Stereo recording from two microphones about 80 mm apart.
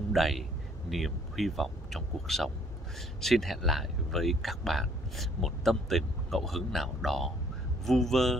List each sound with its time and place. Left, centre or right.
0.1 s speech: centre